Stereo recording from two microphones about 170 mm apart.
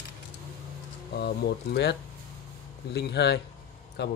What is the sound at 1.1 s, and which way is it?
Speech, 70° left (ahead or behind).